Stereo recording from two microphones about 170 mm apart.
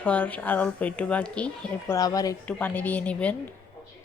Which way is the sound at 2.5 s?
10° left (ahead or behind).